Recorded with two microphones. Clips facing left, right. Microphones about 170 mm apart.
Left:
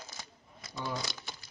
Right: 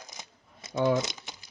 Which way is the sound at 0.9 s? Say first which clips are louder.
Right 9 dB; 20° right (ahead or behind).